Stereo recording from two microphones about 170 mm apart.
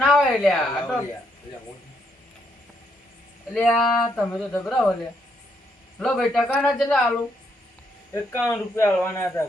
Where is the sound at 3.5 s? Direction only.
5° left (ahead or behind).